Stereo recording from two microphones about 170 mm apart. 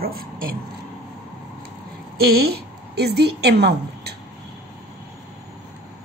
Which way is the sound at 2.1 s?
65° right (ahead or behind).